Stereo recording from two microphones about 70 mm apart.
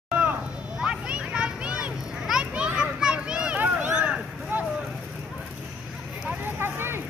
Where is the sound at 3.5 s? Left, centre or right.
Right.